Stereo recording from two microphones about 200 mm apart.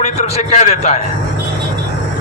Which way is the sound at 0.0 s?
35° left (ahead or behind).